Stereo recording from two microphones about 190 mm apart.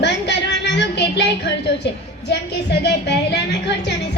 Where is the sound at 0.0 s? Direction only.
65° left (ahead or behind).